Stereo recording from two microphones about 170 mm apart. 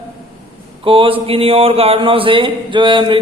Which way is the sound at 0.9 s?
30° right (ahead or behind).